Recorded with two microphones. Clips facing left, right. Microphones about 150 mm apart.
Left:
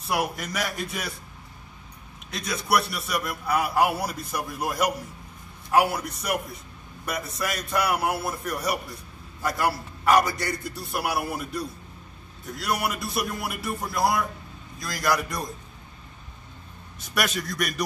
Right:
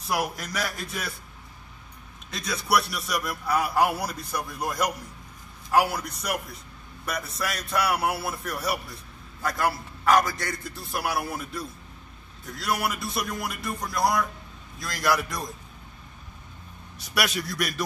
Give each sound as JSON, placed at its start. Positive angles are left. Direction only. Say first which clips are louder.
{"t": 0.0, "sound": "a man's voice", "louder": "left 1 dB", "side_deg": 5}
{"t": 2.3, "sound": "a man's voice", "louder": "left 1 dB", "side_deg": 5}
{"t": 17.1, "sound": "a man's voice", "louder": "even", "side_deg": -5}